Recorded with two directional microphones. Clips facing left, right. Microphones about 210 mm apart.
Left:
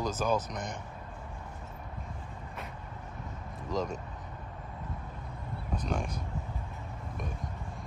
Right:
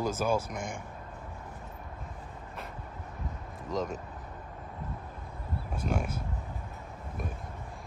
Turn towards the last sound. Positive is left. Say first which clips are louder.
# right 2 dB
turn(degrees=-5)  # may be behind; listen again after turning